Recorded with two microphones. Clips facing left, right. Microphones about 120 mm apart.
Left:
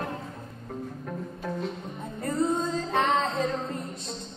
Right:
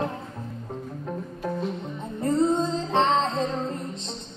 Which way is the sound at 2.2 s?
25° right (ahead or behind).